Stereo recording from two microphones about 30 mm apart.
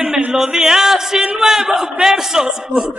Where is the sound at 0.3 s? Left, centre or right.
Centre.